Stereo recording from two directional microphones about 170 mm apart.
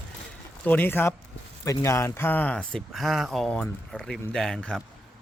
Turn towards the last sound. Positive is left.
turn(degrees=5)  # may be behind; listen again after turning